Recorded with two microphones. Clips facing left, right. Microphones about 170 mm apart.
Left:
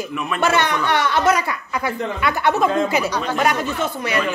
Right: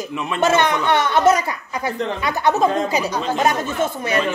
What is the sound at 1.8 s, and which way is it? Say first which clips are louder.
A woman's voice: even; 40° right (ahead or behind).